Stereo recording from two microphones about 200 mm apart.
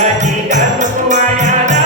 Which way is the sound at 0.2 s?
35° right (ahead or behind).